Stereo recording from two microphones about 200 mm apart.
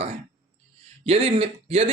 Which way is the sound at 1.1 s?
25° right (ahead or behind).